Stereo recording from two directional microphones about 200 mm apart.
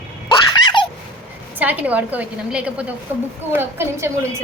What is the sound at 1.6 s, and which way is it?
A woman's voice, 10° right (ahead or behind).